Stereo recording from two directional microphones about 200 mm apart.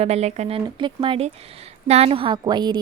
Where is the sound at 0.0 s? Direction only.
30° right (ahead or behind).